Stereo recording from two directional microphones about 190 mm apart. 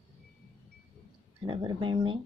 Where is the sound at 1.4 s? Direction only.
25° right (ahead or behind).